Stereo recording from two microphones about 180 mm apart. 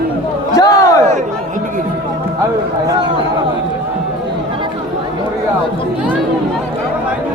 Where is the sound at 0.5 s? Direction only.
20° left (ahead or behind).